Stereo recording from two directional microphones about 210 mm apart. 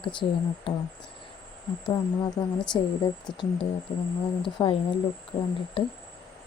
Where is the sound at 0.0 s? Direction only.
25° left (ahead or behind).